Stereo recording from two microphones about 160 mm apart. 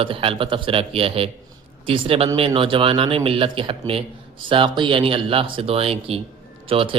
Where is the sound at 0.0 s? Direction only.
35° right (ahead or behind).